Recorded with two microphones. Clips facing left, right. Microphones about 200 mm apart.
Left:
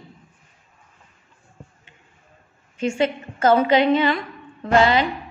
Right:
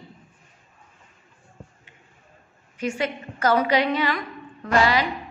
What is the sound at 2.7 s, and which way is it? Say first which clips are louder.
A woman's voice: left 5 dB; 25° left (ahead or behind).